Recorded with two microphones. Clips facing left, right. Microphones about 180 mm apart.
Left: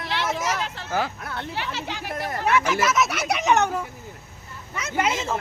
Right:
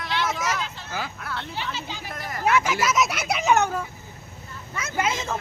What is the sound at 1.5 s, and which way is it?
Speech, 75° left (ahead or behind).